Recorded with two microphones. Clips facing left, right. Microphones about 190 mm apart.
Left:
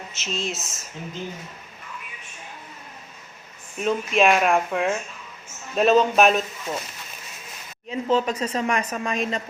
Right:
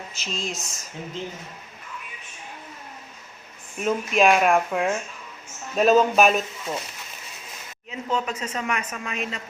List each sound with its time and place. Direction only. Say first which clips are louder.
0.3 s speech: left 2 dB; centre (ahead or behind)
3.8 s speech: even; centre (ahead or behind)
7.9 s a woman's voice: left 5 dB; 35° left (ahead or behind)